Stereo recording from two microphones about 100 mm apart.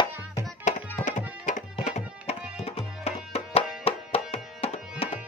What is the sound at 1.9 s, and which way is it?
Music, 90° left.